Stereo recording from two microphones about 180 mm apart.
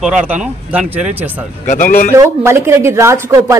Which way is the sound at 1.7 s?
50° left (ahead or behind).